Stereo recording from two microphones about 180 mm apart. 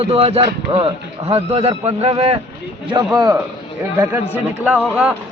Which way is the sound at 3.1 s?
20° right (ahead or behind).